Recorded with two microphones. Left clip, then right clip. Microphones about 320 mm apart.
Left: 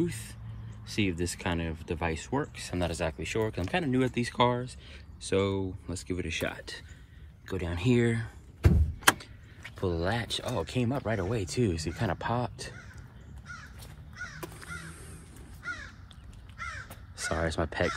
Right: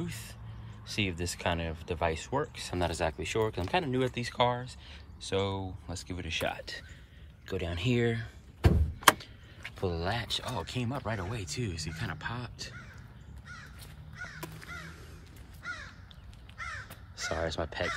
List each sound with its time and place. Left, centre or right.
0.0 s speech: centre
9.8 s speech: centre
15.6 s crow: right
17.2 s crow: left